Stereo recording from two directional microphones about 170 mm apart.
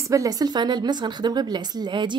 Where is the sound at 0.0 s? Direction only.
20° right (ahead or behind).